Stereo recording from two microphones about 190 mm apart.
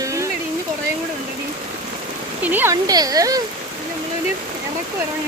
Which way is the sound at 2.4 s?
10° right (ahead or behind).